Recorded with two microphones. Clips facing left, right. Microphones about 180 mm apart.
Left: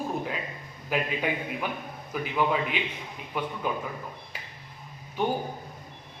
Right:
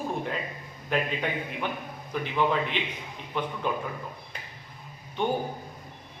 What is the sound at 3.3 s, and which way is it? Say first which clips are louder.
Speech: right 1 dB; 10° left (ahead or behind).